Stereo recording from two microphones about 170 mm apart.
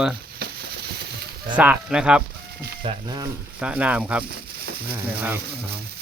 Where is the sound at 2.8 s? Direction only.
25° right (ahead or behind).